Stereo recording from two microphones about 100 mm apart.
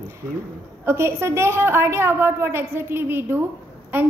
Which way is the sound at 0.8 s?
25° right (ahead or behind).